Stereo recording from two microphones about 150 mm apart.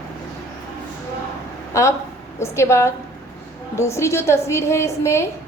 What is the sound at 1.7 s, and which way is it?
A woman's voice, 20° left (ahead or behind).